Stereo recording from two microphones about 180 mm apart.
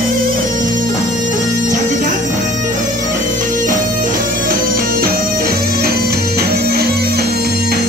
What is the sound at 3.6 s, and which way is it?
Music, 45° right (ahead or behind).